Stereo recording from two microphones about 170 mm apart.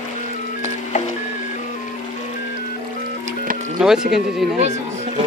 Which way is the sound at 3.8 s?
Centre (ahead or behind).